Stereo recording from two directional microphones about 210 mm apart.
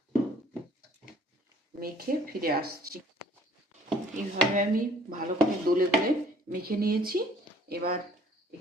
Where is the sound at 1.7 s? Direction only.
45° right (ahead or behind).